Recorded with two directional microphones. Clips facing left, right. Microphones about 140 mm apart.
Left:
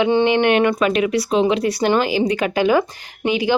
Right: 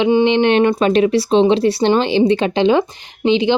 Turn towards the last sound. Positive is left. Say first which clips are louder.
# right 4 dB
turn(degrees=-25)  # may be behind; listen again after turning